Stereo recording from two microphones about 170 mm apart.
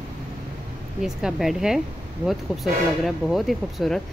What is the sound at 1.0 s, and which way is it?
Speech, centre (ahead or behind).